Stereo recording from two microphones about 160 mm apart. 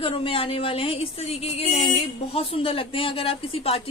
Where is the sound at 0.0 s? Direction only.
35° left (ahead or behind).